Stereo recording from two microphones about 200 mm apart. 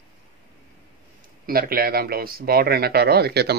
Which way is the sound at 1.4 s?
50° right (ahead or behind).